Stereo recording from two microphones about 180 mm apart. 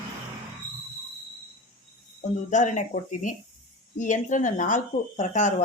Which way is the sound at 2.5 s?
40° left (ahead or behind).